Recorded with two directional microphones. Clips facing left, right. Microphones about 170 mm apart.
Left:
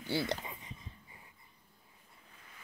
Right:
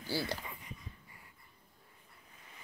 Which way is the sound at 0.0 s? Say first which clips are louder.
Left 2 dB; 20° left (ahead or behind).